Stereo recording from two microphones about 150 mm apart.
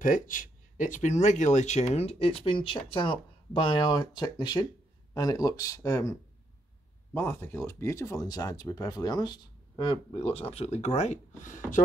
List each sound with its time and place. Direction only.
0.0 s speech: 65° left (ahead or behind); by 6.1 s 20° left (ahead or behind)
7.2 s speech: 15° left (ahead or behind); by 11.8 s 60° left (ahead or behind)